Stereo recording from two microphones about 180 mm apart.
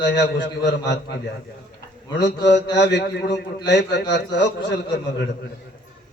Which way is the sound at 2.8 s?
75° left (ahead or behind).